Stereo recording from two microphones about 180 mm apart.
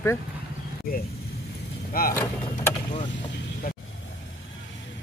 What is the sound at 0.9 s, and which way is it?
Speech, 55° left (ahead or behind).